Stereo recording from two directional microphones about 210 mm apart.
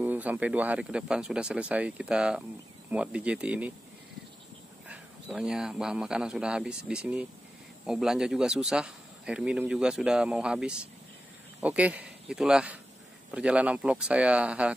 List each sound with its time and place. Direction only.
0.0 s a man's voice: 10° right (ahead or behind)
4.8 s a man's voice: 5° right (ahead or behind)